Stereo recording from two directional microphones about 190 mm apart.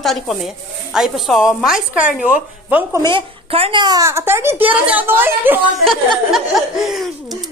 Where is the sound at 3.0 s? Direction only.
30° right (ahead or behind); by 5.5 s 10° right (ahead or behind).